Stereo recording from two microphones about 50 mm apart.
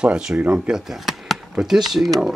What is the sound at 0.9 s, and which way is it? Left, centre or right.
Speech, centre.